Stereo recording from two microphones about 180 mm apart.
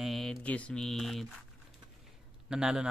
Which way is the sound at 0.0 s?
Centre (ahead or behind).